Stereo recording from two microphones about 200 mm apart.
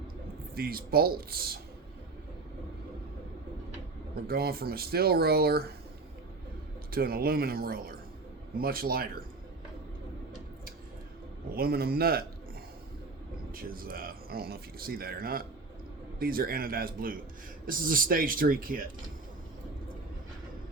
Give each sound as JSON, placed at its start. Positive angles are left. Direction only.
{"t": 0.5, "sound": "speech", "side_deg": -50}
{"t": 4.3, "sound": "speech", "side_deg": -50}
{"t": 6.9, "sound": "speech", "side_deg": -50}
{"t": 11.5, "sound": "speech", "side_deg": -50}
{"t": 13.5, "sound": "speech", "side_deg": -45}